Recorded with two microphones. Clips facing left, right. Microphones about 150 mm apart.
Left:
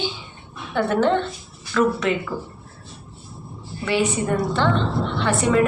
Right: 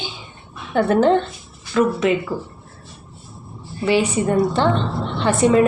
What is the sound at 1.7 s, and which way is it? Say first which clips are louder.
Speech: right 2 dB; 20° right (ahead or behind).